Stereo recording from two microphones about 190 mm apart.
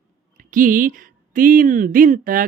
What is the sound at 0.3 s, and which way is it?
Speech, 45° right (ahead or behind).